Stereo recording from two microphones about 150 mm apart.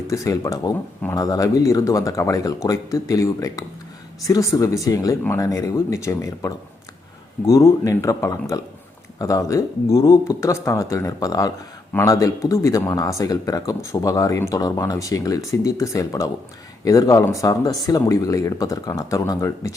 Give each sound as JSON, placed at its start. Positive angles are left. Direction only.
{"t": 0.1, "sound": "speech", "side_deg": 20}